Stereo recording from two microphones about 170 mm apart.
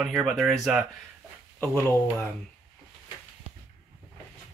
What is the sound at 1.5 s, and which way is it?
Speech, 10° left (ahead or behind).